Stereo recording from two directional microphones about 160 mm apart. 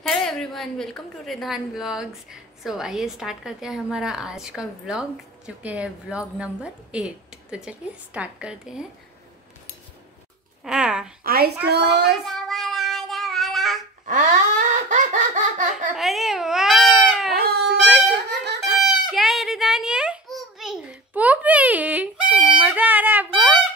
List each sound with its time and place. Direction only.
0.0 s a woman's voice: centre (ahead or behind)
10.6 s speech: 5° right (ahead or behind)
11.2 s a woman's voice: 75° right (ahead or behind)
12.3 s child singing: centre (ahead or behind)
14.0 s a sound: 55° right (ahead or behind)
16.0 s baby cry: centre (ahead or behind)
17.3 s a sound: 75° right (ahead or behind)
18.3 s baby laughter: 90° right
18.8 s a sound: centre (ahead or behind)